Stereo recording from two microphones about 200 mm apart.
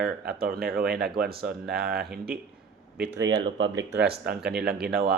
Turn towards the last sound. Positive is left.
turn(degrees=-50)  # may be behind; listen again after turning